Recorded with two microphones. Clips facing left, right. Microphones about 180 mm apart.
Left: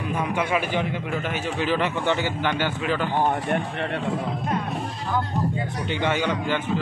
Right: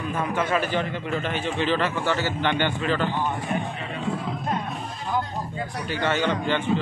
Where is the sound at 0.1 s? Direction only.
15° left (ahead or behind).